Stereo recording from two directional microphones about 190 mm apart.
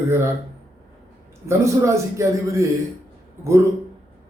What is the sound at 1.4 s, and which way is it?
A man's voice, 15° right (ahead or behind).